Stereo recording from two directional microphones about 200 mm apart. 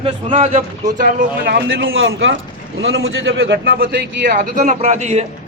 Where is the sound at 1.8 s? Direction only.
75° right (ahead or behind).